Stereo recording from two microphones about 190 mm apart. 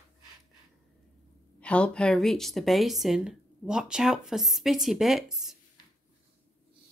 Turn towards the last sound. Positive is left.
turn(degrees=0)  # may be behind; listen again after turning